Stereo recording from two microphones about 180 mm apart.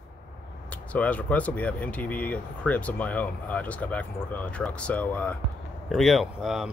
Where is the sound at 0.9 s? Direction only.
10° left (ahead or behind).